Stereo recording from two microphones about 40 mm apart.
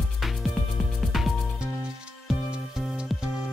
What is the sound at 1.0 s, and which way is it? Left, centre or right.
Music, centre.